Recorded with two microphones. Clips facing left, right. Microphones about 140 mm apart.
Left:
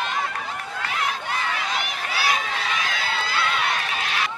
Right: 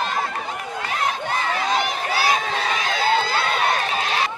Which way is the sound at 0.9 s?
40° right (ahead or behind).